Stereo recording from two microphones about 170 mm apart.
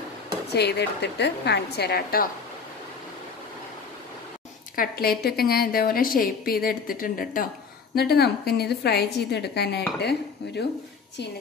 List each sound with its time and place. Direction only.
0.5 s a woman's voice: 75° left (ahead or behind)
4.7 s a woman's voice: 65° left (ahead or behind)
7.9 s a woman's voice: 70° left (ahead or behind)